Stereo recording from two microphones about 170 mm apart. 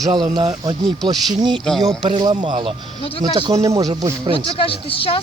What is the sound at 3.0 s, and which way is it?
Speech, 30° left (ahead or behind).